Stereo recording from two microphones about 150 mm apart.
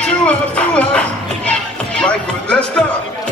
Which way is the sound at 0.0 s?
5° left (ahead or behind).